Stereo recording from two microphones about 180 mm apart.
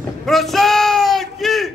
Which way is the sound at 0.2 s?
Centre (ahead or behind).